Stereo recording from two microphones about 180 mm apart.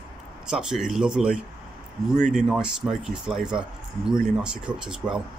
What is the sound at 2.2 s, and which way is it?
Speech, 45° right (ahead or behind).